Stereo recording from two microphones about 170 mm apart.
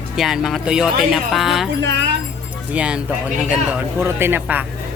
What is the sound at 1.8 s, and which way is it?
Music, 90° right.